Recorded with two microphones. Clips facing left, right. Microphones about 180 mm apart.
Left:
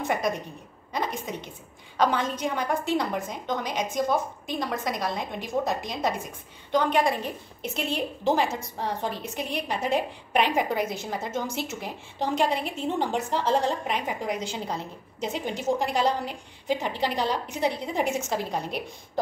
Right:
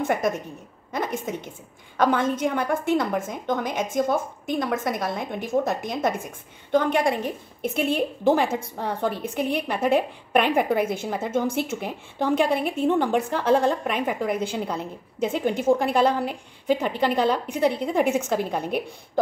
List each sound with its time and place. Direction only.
0.0 s a woman's voice: 50° right (ahead or behind)